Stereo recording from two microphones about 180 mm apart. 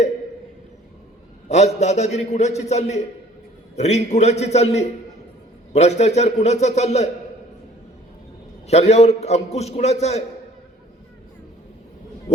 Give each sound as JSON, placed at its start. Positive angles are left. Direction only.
{"t": 1.5, "sound": "a man's voice", "side_deg": 40}
{"t": 8.6, "sound": "a man's voice", "side_deg": 35}